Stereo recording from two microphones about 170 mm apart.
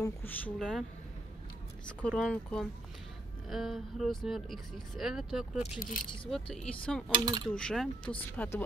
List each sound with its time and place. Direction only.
0.0 s speech: 10° left (ahead or behind)
1.9 s speech: 5° left (ahead or behind)
7.1 s speech: 25° right (ahead or behind)
7.4 s speech: 5° left (ahead or behind)